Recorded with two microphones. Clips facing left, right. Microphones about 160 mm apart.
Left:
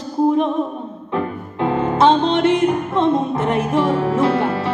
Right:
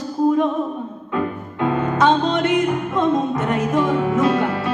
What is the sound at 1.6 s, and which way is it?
Music, 30° left (ahead or behind).